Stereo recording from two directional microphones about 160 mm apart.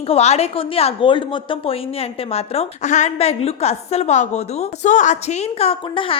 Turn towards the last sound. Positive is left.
turn(degrees=35)  # may be behind; listen again after turning